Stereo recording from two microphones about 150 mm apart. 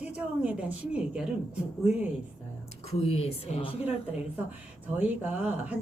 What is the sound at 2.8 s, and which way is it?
A woman's voice, 45° left (ahead or behind).